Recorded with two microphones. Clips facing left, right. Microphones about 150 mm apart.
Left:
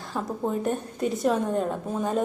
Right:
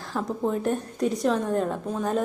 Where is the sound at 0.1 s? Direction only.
Centre (ahead or behind).